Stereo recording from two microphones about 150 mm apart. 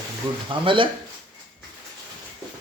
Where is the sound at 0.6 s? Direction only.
35° right (ahead or behind).